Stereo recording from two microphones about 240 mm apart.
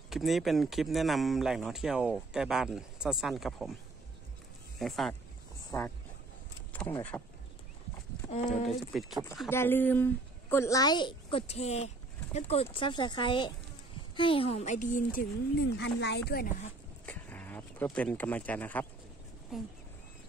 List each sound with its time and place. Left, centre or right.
0.1 s speech: centre
4.7 s a woman's voice: centre
8.5 s a woman's voice: centre; by 15.2 s left
15.7 s speech: left
17.0 s a sound: centre
19.5 s speech: centre